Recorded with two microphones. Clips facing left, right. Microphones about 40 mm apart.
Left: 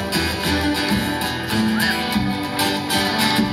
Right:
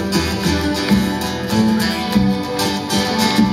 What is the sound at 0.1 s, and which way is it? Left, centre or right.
Music, centre.